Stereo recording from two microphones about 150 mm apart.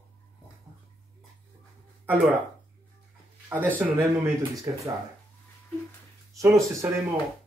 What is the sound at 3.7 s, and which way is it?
Speech, 10° right (ahead or behind).